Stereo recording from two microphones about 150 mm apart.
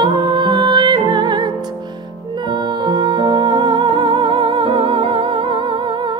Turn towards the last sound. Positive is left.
turn(degrees=-35)  # may be behind; listen again after turning